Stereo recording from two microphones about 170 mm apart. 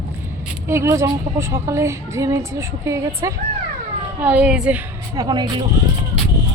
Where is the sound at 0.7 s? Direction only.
15° right (ahead or behind).